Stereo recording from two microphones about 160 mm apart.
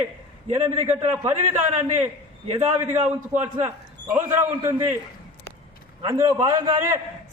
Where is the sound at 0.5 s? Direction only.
45° right (ahead or behind).